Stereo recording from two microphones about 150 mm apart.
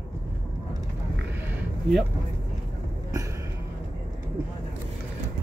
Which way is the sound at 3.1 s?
20° right (ahead or behind).